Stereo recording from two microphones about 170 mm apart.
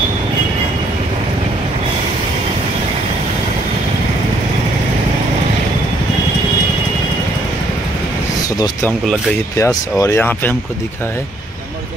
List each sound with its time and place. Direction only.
9.6 s speech: 20° left (ahead or behind)